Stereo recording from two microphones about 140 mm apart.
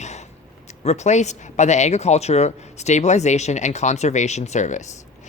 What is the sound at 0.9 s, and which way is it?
A woman's voice, 55° left (ahead or behind).